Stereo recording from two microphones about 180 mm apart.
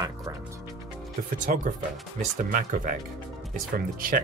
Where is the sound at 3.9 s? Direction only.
50° right (ahead or behind).